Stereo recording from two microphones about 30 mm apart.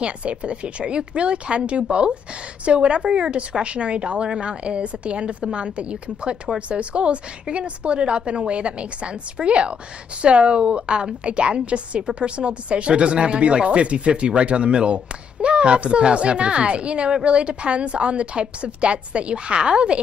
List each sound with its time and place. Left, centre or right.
0.0 s a woman's voice: right